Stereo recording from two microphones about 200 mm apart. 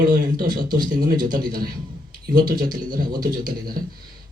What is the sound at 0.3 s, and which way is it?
Speech, 45° right (ahead or behind).